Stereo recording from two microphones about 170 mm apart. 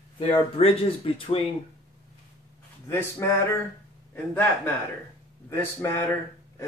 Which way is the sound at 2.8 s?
15° left (ahead or behind).